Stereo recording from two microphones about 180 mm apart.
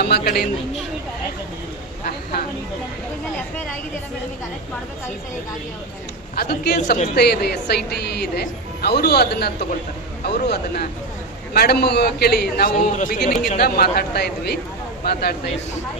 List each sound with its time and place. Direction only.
0.0 s speech: 60° left (ahead or behind)
6.3 s speech: 65° left (ahead or behind)
6.7 s speech: 40° left (ahead or behind)
7.2 s speech: 65° left (ahead or behind)